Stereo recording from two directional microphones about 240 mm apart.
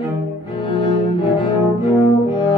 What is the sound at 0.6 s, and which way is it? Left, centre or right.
Cello, centre.